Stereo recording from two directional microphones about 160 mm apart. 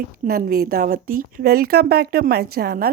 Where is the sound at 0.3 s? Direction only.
70° right (ahead or behind).